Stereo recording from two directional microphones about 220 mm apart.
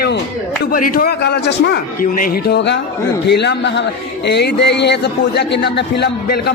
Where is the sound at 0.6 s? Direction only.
40° left (ahead or behind).